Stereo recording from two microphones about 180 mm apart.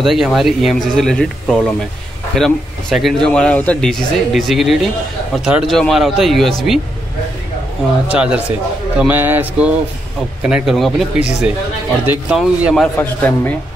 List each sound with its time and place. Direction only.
0.0 s speech: centre (ahead or behind)
8.1 s a man's voice: 5° right (ahead or behind); by 13.6 s 10° left (ahead or behind)